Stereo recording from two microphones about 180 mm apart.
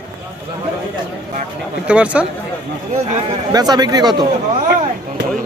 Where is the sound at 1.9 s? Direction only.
5° right (ahead or behind).